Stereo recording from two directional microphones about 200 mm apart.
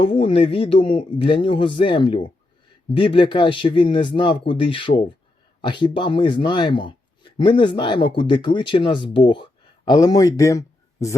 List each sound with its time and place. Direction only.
0.0 s a man's voice: 25° left (ahead or behind)